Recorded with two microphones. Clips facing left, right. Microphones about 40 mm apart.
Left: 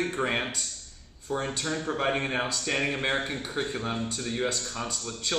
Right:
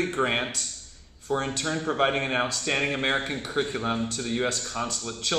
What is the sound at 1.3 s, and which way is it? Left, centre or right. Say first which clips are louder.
Speech: right 3 dB; right.